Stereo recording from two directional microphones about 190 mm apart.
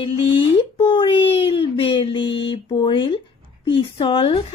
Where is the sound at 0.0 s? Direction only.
30° left (ahead or behind).